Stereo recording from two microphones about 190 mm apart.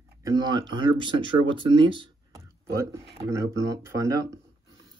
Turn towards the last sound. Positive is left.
turn(degrees=-15)  # may be behind; listen again after turning